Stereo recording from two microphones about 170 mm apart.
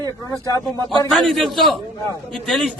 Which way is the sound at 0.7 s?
25° right (ahead or behind).